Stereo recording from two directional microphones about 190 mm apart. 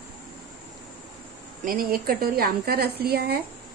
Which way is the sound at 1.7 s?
50° right (ahead or behind).